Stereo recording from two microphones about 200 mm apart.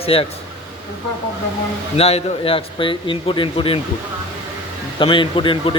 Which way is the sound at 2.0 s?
30° left (ahead or behind).